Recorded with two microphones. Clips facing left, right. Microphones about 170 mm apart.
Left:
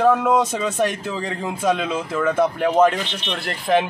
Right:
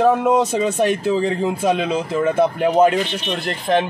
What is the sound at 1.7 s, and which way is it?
Speech, 25° right (ahead or behind).